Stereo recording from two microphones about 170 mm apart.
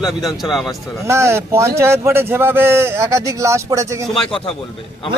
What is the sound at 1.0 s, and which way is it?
Speech, 15° right (ahead or behind).